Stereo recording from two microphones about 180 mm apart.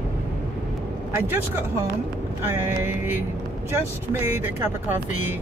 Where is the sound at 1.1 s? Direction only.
10° right (ahead or behind).